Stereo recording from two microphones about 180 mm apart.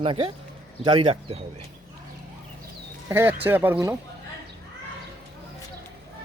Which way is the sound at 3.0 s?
10° right (ahead or behind).